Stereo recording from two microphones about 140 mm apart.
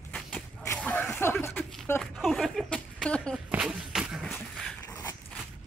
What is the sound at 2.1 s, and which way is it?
Speech, centre (ahead or behind).